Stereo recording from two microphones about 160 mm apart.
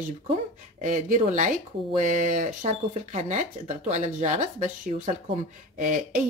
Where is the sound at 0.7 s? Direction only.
55° right (ahead or behind).